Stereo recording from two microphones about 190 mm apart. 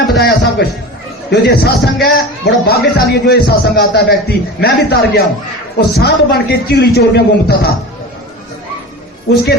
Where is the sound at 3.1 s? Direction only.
60° left (ahead or behind).